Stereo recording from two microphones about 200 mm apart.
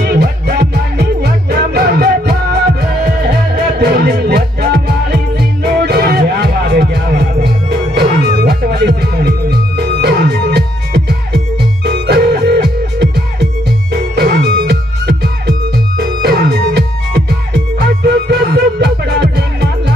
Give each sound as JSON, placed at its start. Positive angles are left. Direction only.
{"t": 0.0, "sound": "music", "side_deg": -50}
{"t": 3.7, "sound": "music", "side_deg": -55}